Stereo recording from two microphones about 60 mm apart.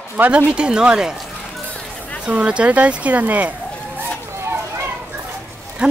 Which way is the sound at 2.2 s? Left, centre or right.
Centre.